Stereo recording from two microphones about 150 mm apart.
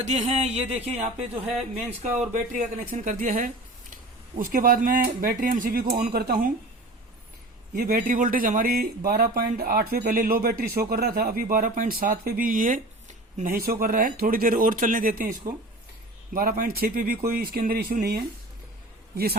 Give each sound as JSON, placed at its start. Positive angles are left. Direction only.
{"t": 0.0, "sound": "speech", "side_deg": -50}
{"t": 2.3, "sound": "speech", "side_deg": -60}
{"t": 7.8, "sound": "speech", "side_deg": -75}
{"t": 17.2, "sound": "speech", "side_deg": -90}